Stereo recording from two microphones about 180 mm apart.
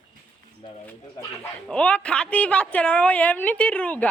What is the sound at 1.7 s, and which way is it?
A woman's voice, 5° left (ahead or behind).